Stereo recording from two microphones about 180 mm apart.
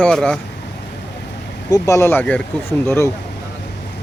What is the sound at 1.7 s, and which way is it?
Speech, 15° left (ahead or behind).